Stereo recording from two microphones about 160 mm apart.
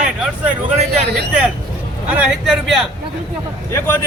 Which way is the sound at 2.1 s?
5° right (ahead or behind).